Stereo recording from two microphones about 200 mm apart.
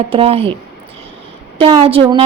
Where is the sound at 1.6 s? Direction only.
30° right (ahead or behind).